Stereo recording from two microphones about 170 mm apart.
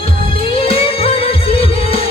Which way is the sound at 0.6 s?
35° left (ahead or behind).